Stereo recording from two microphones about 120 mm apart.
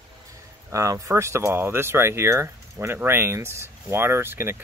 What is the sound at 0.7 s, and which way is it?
Speech, 25° right (ahead or behind).